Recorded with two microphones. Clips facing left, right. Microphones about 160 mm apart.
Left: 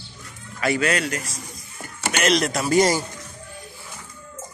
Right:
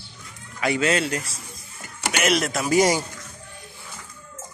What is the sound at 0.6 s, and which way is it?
Speech, 20° right (ahead or behind).